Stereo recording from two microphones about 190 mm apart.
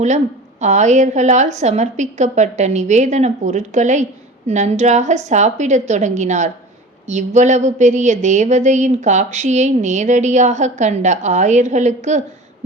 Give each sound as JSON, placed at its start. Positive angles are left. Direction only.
{"t": 0.6, "sound": "a woman's voice", "side_deg": -40}